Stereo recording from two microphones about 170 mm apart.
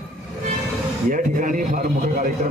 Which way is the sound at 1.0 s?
50° right (ahead or behind).